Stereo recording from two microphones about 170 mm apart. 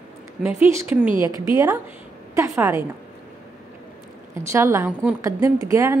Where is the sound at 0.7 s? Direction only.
15° right (ahead or behind).